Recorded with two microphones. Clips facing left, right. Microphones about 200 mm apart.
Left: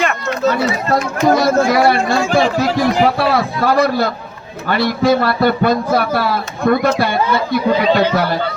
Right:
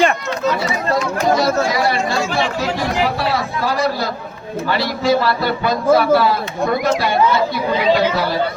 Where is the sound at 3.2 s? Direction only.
55° left (ahead or behind).